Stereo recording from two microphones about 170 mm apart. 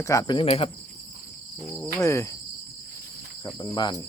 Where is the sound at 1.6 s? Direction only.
Centre (ahead or behind).